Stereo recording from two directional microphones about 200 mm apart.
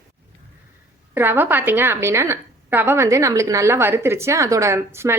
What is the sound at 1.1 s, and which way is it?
A woman's voice, 10° right (ahead or behind).